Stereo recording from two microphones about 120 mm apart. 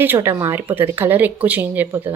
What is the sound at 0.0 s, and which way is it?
A woman's voice, 20° right (ahead or behind).